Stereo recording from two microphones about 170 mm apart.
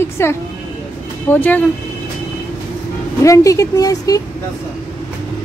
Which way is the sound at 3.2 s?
20° left (ahead or behind).